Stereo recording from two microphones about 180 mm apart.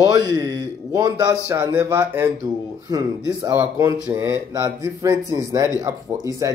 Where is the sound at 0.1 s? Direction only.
20° right (ahead or behind).